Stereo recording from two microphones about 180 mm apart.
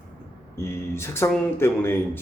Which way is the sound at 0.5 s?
15° left (ahead or behind).